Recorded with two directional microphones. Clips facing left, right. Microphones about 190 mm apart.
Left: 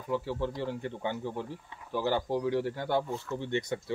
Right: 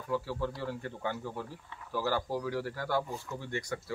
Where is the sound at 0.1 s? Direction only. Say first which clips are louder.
Left 2 dB; 20° left (ahead or behind).